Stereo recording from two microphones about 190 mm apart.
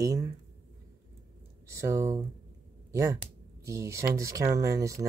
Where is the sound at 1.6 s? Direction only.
15° right (ahead or behind).